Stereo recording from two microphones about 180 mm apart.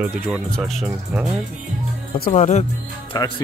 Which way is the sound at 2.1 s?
50° left (ahead or behind).